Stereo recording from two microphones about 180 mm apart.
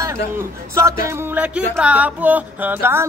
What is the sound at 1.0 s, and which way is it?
Music, 10° right (ahead or behind).